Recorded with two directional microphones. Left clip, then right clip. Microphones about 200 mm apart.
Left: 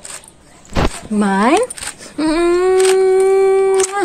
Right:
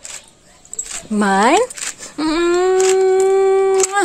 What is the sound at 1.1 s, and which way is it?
Speech, 30° right (ahead or behind).